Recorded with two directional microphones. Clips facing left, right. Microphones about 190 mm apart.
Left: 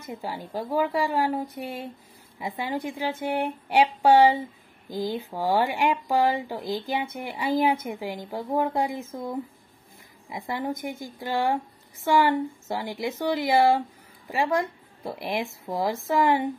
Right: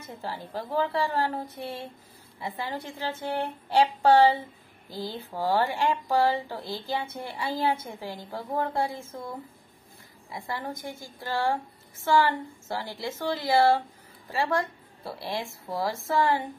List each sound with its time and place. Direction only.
0.0 s speech: 15° left (ahead or behind)
10.3 s speech: 20° left (ahead or behind)